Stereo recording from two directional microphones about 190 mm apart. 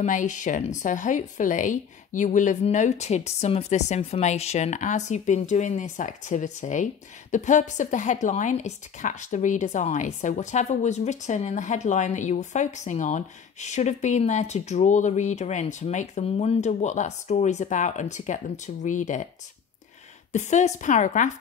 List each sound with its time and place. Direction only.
0.0 s speech: 40° left (ahead or behind)
20.3 s speech: 40° left (ahead or behind)